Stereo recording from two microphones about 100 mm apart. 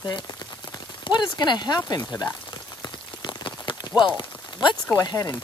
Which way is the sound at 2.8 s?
50° left (ahead or behind).